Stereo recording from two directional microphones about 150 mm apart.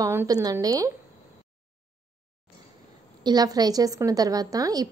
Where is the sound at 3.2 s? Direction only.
25° right (ahead or behind).